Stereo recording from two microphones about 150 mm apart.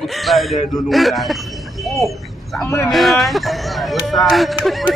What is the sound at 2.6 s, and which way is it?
Speech, 15° left (ahead or behind).